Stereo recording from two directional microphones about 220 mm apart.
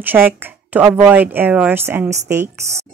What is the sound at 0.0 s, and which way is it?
A woman's voice, 10° right (ahead or behind).